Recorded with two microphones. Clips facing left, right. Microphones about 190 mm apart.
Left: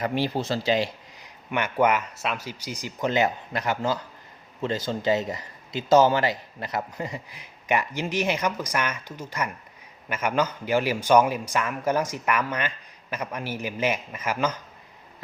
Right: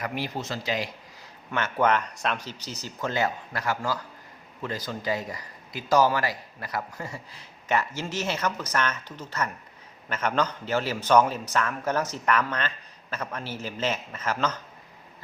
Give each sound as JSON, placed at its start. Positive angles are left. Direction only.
{"t": 0.0, "sound": "speech", "side_deg": 30}
{"t": 1.2, "sound": "a man's voice", "side_deg": 15}